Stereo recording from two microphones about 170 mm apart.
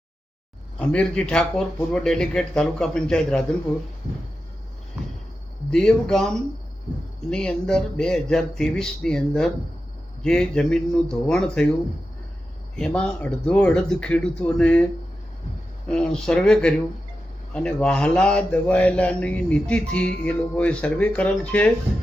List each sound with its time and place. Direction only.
0.8 s speech: 5° left (ahead or behind)
5.7 s speech: 5° left (ahead or behind)
12.7 s speech: 5° left (ahead or behind)
15.9 s speech: 5° left (ahead or behind)